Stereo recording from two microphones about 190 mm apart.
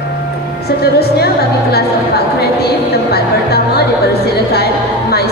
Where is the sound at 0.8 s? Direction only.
55° left (ahead or behind).